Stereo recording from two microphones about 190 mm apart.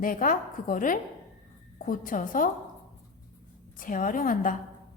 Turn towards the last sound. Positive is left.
turn(degrees=45)  # may be behind; listen again after turning